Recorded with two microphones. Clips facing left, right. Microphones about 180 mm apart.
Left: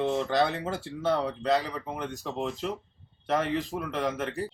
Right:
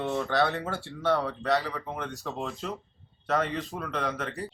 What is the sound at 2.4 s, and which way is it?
A man's voice, 20° left (ahead or behind).